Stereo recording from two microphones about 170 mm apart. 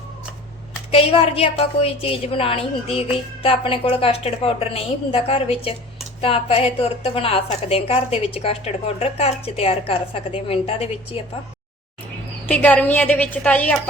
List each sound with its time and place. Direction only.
0.9 s a woman's voice: 35° left (ahead or behind)
12.5 s a woman's voice: 10° left (ahead or behind)